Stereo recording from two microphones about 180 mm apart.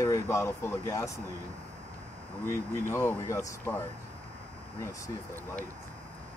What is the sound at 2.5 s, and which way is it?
Speech, 15° left (ahead or behind).